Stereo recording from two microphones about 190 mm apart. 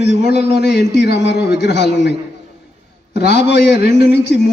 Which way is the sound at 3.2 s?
60° left (ahead or behind).